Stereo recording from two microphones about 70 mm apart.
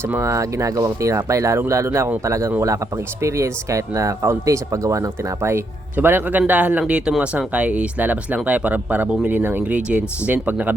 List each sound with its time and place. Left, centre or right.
0.2 s speech: right